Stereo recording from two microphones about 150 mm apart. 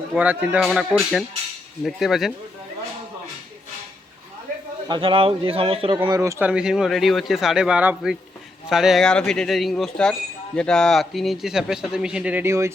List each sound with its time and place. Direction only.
0.1 s speech: 10° right (ahead or behind)
4.9 s speech: 35° right (ahead or behind)
6.1 s speech: 20° right (ahead or behind)
6.5 s speech: 5° right (ahead or behind)